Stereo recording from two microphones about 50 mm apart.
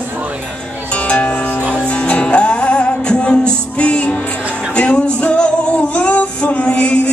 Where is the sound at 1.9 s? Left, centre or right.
Left.